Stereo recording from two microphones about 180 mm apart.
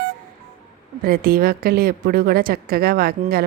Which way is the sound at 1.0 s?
55° right (ahead or behind).